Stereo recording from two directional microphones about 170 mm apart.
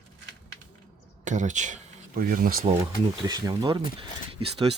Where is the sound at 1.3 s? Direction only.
45° right (ahead or behind).